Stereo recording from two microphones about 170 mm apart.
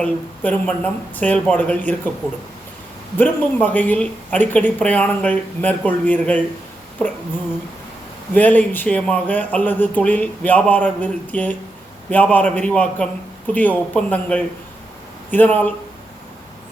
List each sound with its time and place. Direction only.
0.0 s speech: 10° left (ahead or behind)
3.2 s speech: 10° left (ahead or behind)
8.3 s speech: 10° left (ahead or behind)